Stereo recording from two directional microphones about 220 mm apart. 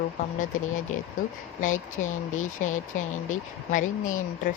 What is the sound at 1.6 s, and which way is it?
Speech, 35° left (ahead or behind).